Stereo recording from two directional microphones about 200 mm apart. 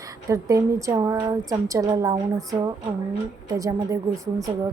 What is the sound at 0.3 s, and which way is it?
A woman's voice, 15° right (ahead or behind).